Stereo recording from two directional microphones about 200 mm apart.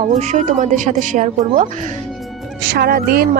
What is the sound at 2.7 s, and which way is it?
Speech, 50° right (ahead or behind).